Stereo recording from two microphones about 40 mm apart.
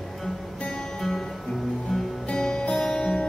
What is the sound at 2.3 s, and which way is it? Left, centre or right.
Music, centre.